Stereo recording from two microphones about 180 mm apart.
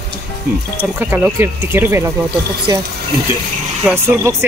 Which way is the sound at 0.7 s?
10° right (ahead or behind).